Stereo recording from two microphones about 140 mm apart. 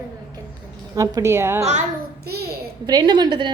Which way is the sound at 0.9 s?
25° right (ahead or behind).